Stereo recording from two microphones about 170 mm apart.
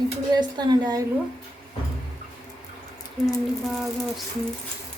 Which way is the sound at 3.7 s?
Centre (ahead or behind).